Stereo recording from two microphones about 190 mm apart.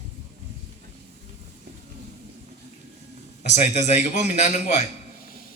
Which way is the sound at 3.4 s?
35° left (ahead or behind).